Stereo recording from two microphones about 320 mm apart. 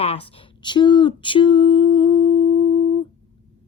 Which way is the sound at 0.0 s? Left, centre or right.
Centre.